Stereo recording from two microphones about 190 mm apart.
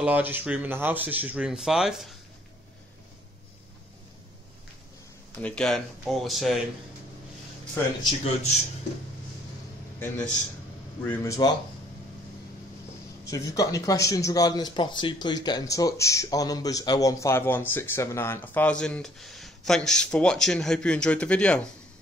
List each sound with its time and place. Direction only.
0.0 s speech: 10° right (ahead or behind)
5.4 s speech: 5° left (ahead or behind)
9.9 s a man's voice: 10° left (ahead or behind)
13.3 s speech: 20° left (ahead or behind)